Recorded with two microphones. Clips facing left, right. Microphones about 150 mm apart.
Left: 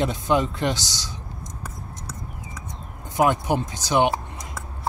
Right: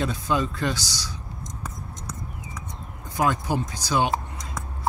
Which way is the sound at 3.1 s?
20° left (ahead or behind).